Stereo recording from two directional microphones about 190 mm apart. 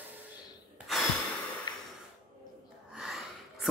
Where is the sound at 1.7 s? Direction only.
20° left (ahead or behind).